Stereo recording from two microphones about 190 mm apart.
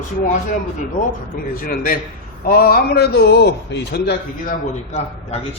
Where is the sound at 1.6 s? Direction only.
45° left (ahead or behind).